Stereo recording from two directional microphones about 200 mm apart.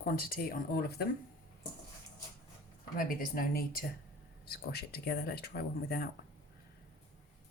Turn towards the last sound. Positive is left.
turn(degrees=50)  # may be behind; listen again after turning